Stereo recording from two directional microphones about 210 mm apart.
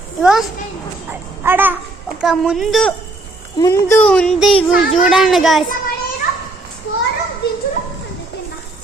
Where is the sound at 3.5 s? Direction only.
15° left (ahead or behind); by 5.6 s centre (ahead or behind).